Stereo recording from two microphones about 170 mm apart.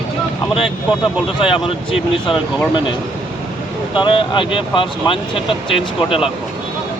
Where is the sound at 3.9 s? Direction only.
30° left (ahead or behind).